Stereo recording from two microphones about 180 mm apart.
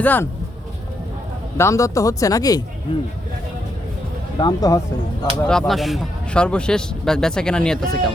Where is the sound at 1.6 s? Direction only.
15° left (ahead or behind).